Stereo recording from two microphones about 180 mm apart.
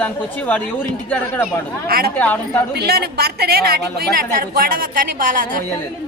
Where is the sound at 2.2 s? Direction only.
10° left (ahead or behind).